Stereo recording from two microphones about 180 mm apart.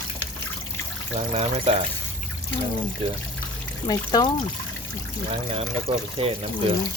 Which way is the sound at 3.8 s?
20° left (ahead or behind).